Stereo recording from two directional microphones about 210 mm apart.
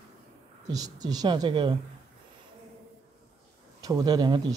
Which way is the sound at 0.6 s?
15° right (ahead or behind).